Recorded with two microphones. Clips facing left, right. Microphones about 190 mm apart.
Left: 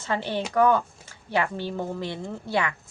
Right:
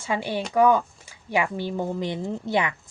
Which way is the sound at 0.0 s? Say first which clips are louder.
Right 1 dB; 10° right (ahead or behind).